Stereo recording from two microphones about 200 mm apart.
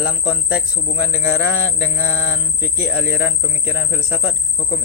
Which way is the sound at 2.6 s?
10° right (ahead or behind).